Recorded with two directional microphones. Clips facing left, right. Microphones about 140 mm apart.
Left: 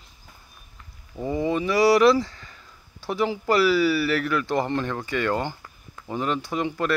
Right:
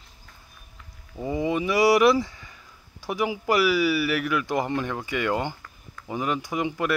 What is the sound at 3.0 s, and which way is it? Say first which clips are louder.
Speech: left 2 dB; 15° right (ahead or behind).